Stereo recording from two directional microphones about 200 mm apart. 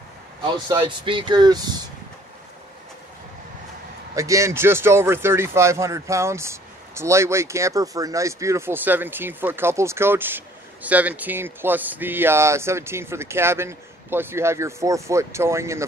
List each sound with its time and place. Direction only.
0.4 s speech: 25° right (ahead or behind)
4.1 s speech: 15° right (ahead or behind)